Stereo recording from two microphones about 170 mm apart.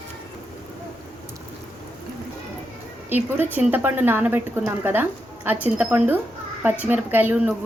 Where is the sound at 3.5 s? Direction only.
10° right (ahead or behind).